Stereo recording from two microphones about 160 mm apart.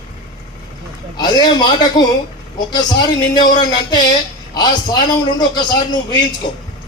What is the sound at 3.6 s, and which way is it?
A man's voice, 25° left (ahead or behind).